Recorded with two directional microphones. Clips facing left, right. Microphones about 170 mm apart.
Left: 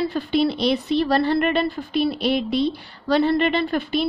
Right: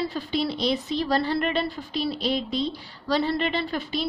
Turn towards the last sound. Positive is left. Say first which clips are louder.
# left 6 dB
turn(degrees=60)  # may be behind; listen again after turning